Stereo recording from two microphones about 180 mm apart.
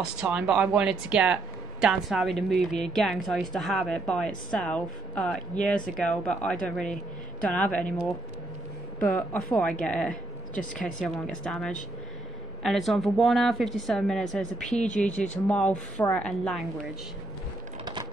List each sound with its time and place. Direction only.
0.0 s speech: 5° right (ahead or behind)
9.0 s speech: 10° left (ahead or behind)
10.5 s speech: 45° left (ahead or behind)
11.0 s speech: 5° left (ahead or behind)